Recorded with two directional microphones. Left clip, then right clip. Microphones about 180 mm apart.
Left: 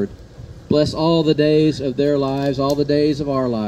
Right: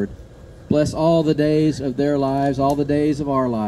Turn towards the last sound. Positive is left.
turn(degrees=-30)  # may be behind; listen again after turning